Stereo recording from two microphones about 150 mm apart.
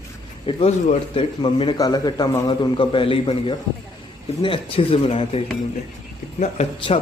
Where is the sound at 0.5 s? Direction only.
45° left (ahead or behind).